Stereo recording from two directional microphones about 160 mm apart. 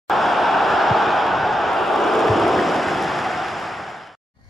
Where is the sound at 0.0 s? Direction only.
Centre (ahead or behind).